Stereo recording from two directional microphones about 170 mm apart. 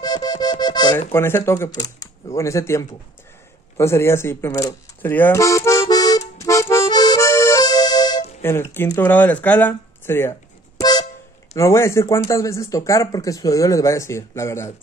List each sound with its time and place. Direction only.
0.0 s music: 25° left (ahead or behind)
0.9 s speech: 15° left (ahead or behind)
3.7 s music: 15° left (ahead or behind)
8.4 s speech: 15° left (ahead or behind)
10.8 s vehicle horn: 25° left (ahead or behind)
11.5 s speech: 15° left (ahead or behind)